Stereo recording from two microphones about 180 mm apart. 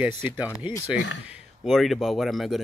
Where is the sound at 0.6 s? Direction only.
30° left (ahead or behind).